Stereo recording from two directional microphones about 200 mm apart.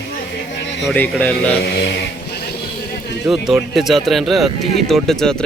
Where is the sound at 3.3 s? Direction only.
Centre (ahead or behind).